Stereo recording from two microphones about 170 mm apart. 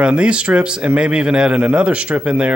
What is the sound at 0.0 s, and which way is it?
A man's voice, 5° right (ahead or behind).